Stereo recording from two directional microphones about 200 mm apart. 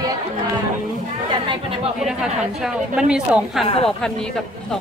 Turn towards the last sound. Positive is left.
turn(degrees=-5)  # may be behind; listen again after turning